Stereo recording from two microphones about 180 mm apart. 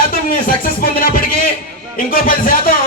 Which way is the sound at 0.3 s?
55° left (ahead or behind).